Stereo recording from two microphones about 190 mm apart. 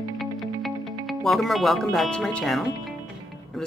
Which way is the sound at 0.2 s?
Centre (ahead or behind).